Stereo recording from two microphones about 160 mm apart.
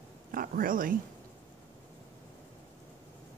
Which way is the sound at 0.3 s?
60° right (ahead or behind).